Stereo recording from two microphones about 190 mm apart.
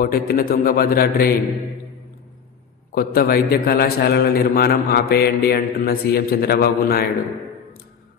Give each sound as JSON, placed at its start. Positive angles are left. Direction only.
{"t": 0.0, "sound": "a man's voice", "side_deg": 50}
{"t": 2.9, "sound": "a man's voice", "side_deg": 50}